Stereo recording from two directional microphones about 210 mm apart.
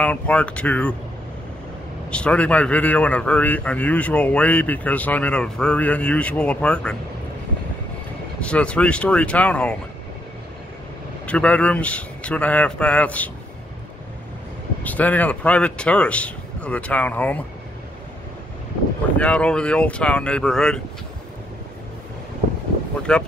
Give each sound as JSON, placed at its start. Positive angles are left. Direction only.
{"t": 0.0, "sound": "speech", "side_deg": 5}
{"t": 2.0, "sound": "a man's voice", "side_deg": 5}
{"t": 8.4, "sound": "speech", "side_deg": 5}
{"t": 11.2, "sound": "a man's voice", "side_deg": 5}
{"t": 14.8, "sound": "a man's voice", "side_deg": 5}
{"t": 19.1, "sound": "speech", "side_deg": 5}
{"t": 23.1, "sound": "speech", "side_deg": 5}